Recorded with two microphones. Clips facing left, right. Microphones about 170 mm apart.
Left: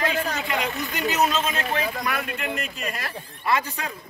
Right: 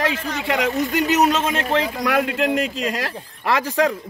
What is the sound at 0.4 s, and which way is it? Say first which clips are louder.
Speech: right 7 dB; 90° right.